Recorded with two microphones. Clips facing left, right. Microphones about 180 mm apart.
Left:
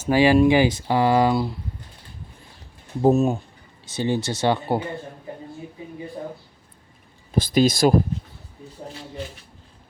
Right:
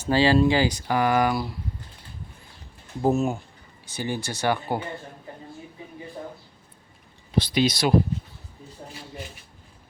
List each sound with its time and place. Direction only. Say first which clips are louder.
0.1 s speech: left 3 dB; 15° left (ahead or behind)
3.0 s speech: left 5 dB; 20° left (ahead or behind)
7.3 s speech: left 4 dB; 45° left (ahead or behind)